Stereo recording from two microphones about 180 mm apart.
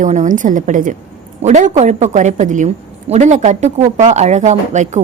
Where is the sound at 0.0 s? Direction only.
40° right (ahead or behind).